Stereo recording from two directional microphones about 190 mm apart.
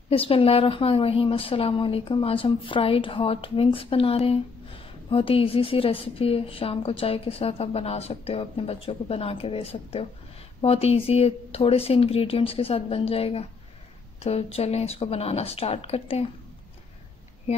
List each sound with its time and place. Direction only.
0.1 s a woman's voice: 30° left (ahead or behind)